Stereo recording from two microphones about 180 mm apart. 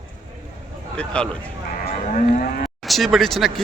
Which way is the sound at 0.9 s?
5° left (ahead or behind).